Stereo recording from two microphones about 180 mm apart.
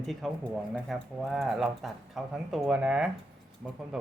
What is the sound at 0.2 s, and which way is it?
Speech, centre (ahead or behind).